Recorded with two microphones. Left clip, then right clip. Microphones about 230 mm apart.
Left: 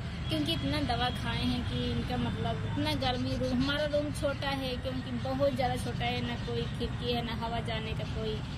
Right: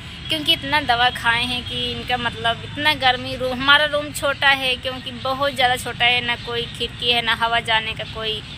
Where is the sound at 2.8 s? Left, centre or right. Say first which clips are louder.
Right 15 dB; centre.